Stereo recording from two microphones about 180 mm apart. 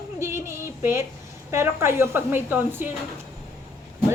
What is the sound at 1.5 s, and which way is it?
A woman's voice, 15° right (ahead or behind).